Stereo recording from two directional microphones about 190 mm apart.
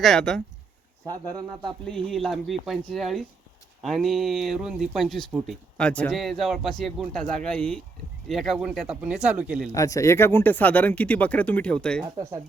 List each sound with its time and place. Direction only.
0.0 s speech: 5° left (ahead or behind)
1.0 s speech: 20° right (ahead or behind)
1.8 s speech: 5° left (ahead or behind)
9.6 s speech: 15° left (ahead or behind)